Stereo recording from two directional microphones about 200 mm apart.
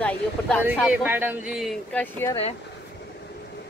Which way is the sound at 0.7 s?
5° right (ahead or behind).